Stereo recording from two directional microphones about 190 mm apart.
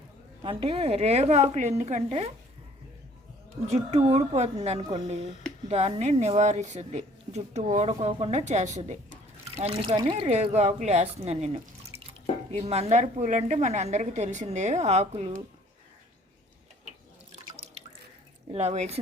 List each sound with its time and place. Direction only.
0.4 s speech: 30° right (ahead or behind)
3.7 s speech: 35° right (ahead or behind)
18.5 s speech: 35° right (ahead or behind)